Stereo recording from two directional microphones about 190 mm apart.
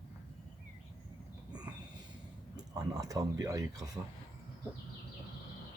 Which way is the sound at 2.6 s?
20° right (ahead or behind).